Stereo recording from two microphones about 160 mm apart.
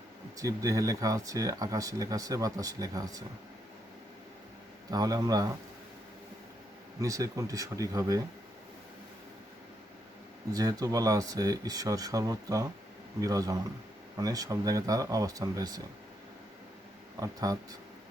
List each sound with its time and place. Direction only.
0.3 s speech: 20° right (ahead or behind)
4.9 s speech: 25° right (ahead or behind)
7.0 s speech: 20° right (ahead or behind)
10.5 s speech: 25° right (ahead or behind)
17.2 s speech: 20° right (ahead or behind)